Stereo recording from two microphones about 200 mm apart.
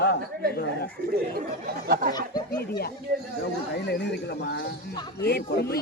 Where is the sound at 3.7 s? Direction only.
55° left (ahead or behind).